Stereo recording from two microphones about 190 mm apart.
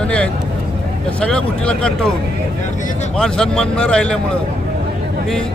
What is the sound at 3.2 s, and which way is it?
Speech, 5° left (ahead or behind).